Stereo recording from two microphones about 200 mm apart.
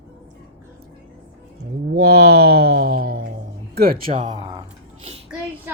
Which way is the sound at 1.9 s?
90° right.